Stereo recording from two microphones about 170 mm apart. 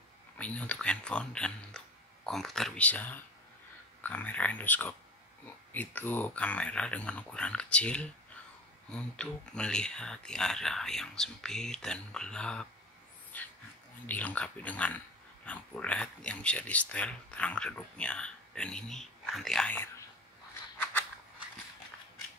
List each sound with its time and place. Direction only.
0.4 s speech: 10° left (ahead or behind)
20.7 s scissors: 10° left (ahead or behind)